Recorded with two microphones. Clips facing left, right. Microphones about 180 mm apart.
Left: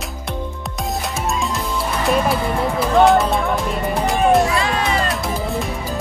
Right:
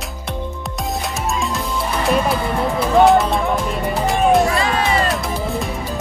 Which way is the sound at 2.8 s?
Centre (ahead or behind).